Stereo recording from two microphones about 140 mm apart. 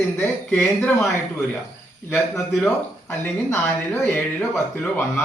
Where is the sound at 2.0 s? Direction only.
10° left (ahead or behind).